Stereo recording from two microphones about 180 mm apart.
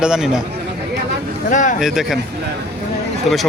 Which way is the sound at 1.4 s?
45° left (ahead or behind).